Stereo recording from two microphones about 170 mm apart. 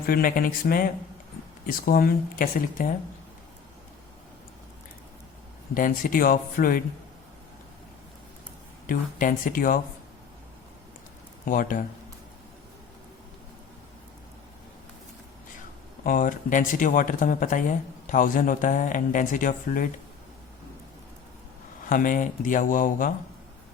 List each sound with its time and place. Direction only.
0.0 s speech: 60° left (ahead or behind)
5.7 s speech: 55° left (ahead or behind)
8.9 s speech: 55° left (ahead or behind)
11.4 s speech: 50° left (ahead or behind)
16.0 s speech: 50° left (ahead or behind)
21.8 s speech: 55° left (ahead or behind)